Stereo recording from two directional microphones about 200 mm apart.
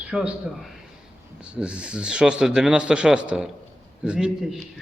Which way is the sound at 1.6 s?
5° right (ahead or behind).